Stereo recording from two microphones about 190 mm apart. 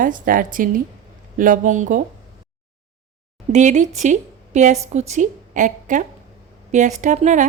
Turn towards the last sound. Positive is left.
turn(degrees=-40)  # may be behind; listen again after turning